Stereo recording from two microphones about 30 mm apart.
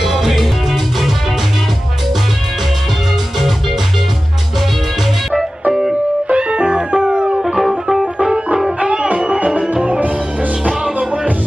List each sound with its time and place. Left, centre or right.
0.0 s music: centre
5.3 s music: centre
6.2 s music: right
8.6 s music: right